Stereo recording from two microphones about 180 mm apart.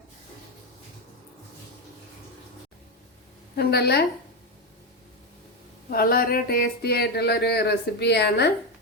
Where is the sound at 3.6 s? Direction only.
65° left (ahead or behind).